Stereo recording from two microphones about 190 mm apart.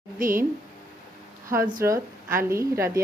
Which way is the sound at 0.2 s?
45° right (ahead or behind).